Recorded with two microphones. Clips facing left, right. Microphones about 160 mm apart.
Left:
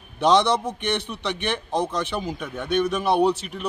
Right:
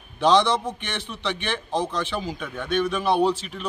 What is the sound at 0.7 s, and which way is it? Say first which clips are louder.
A man's voice: left 5 dB; 15° left (ahead or behind).